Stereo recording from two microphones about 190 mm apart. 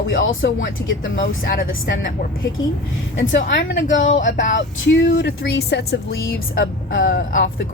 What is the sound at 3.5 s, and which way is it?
Speech, 75° left (ahead or behind).